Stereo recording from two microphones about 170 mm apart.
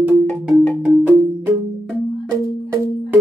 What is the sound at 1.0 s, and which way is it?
Music, 15° right (ahead or behind).